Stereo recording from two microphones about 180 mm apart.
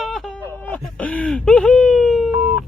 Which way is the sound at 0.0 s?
Centre (ahead or behind).